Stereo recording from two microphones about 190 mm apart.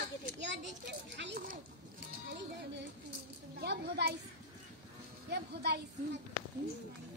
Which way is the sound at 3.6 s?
60° right (ahead or behind).